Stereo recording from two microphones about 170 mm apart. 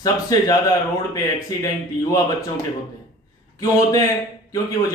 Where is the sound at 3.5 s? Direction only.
20° left (ahead or behind).